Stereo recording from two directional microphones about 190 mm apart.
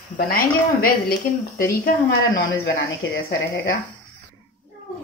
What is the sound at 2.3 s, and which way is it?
Speech, 70° left (ahead or behind).